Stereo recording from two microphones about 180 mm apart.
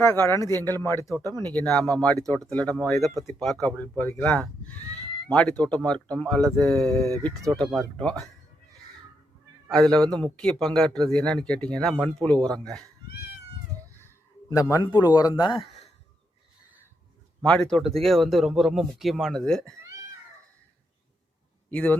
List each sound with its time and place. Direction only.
0.1 s speech: 15° left (ahead or behind)
1.1 s speech: 20° right (ahead or behind)
1.5 s speech: 10° left (ahead or behind)
9.7 s speech: centre (ahead or behind)
14.5 s speech: 20° left (ahead or behind)
17.4 s speech: 5° left (ahead or behind)
21.7 s speech: 5° left (ahead or behind)